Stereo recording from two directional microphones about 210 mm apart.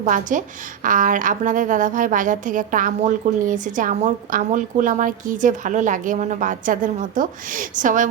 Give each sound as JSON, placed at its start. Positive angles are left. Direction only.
{"t": 0.0, "sound": "a woman's voice", "side_deg": -40}